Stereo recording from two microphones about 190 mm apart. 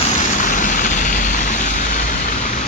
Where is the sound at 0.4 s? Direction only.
40° left (ahead or behind).